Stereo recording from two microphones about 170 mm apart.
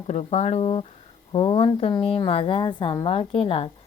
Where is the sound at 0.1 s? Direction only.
40° left (ahead or behind).